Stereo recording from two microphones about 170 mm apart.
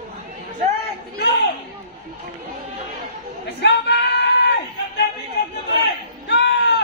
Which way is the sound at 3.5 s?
85° left.